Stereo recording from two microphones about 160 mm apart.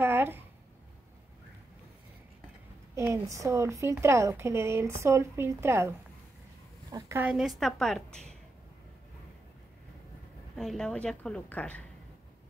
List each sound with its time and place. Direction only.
0.0 s a sound: 15° right (ahead or behind)
3.0 s a woman's voice: 20° right (ahead or behind); by 8.4 s 5° left (ahead or behind)
10.5 s a woman's voice: 5° left (ahead or behind)